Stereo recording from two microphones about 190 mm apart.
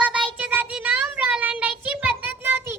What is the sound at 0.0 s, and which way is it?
Child singing, 5° right (ahead or behind).